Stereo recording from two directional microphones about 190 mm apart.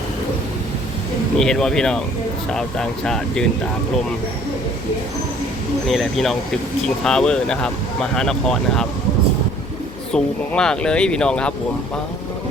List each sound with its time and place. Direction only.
1.4 s speech: 5° left (ahead or behind)
5.9 s speech: centre (ahead or behind)
10.1 s speech: 5° left (ahead or behind)